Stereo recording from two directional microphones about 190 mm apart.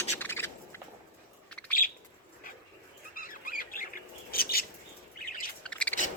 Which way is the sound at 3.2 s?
45° left (ahead or behind).